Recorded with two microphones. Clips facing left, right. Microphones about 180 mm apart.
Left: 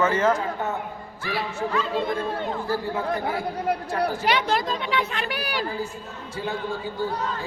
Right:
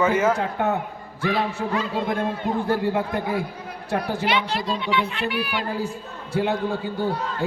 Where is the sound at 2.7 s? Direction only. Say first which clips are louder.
Right 2 dB; 65° right (ahead or behind).